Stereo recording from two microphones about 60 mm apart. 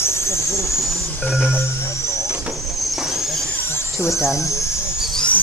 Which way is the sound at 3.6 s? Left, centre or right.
Left.